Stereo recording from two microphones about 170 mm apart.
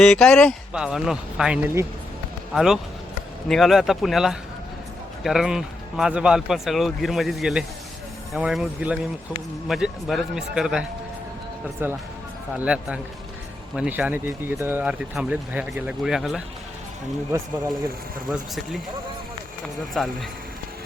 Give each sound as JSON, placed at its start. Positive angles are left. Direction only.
{"t": 0.0, "sound": "speech", "side_deg": 5}
{"t": 17.3, "sound": "speech", "side_deg": -15}
{"t": 18.3, "sound": "speech", "side_deg": 0}
{"t": 20.0, "sound": "speech", "side_deg": 0}